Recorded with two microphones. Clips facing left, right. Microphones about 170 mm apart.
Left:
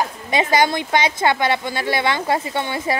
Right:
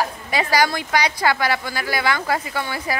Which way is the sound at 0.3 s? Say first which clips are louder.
Left 3 dB; 20° left (ahead or behind).